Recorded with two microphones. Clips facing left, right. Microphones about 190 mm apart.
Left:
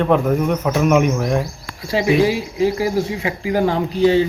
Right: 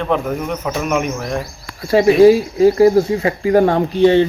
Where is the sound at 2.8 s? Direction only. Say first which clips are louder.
Right 8 dB; 60° right (ahead or behind).